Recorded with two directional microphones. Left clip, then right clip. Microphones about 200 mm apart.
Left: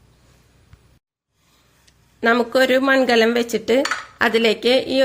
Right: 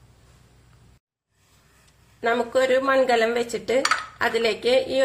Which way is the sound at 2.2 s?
50° left (ahead or behind).